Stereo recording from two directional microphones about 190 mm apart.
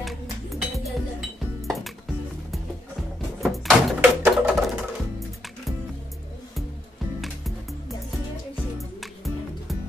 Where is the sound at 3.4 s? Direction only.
Centre (ahead or behind).